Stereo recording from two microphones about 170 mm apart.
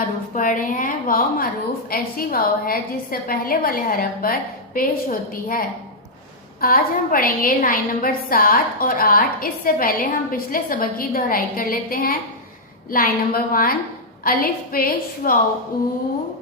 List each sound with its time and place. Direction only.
0.3 s a woman's voice: 50° left (ahead or behind)